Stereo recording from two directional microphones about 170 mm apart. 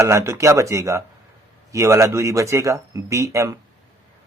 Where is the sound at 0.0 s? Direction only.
15° right (ahead or behind).